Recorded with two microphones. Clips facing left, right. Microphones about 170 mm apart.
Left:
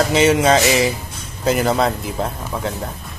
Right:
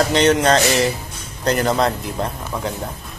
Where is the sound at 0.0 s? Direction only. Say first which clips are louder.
Left 1 dB; 5° left (ahead or behind).